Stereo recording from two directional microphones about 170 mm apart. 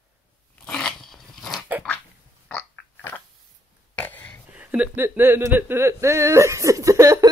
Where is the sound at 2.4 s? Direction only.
10° left (ahead or behind).